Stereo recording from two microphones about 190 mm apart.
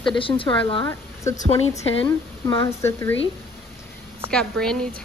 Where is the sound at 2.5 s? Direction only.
15° left (ahead or behind).